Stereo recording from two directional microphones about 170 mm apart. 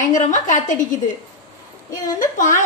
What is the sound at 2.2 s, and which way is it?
Speech, 50° left (ahead or behind).